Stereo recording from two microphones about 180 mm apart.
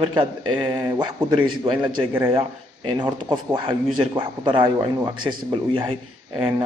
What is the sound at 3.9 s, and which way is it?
Speech, 25° right (ahead or behind).